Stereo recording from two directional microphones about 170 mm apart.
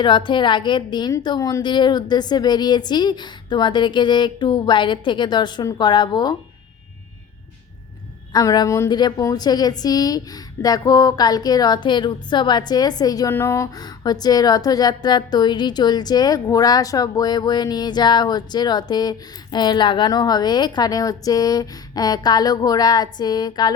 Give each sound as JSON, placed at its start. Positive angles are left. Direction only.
{"t": 0.0, "sound": "a woman's voice", "side_deg": 30}
{"t": 8.3, "sound": "a woman's voice", "side_deg": 20}